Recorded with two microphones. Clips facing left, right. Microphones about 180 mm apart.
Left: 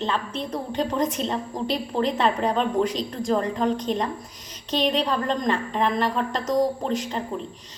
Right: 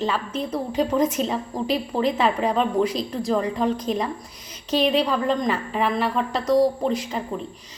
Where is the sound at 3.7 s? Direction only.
35° left (ahead or behind).